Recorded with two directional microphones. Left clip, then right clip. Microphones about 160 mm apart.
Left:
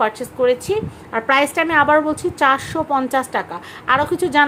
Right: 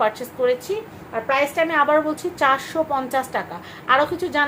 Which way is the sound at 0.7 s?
55° left (ahead or behind).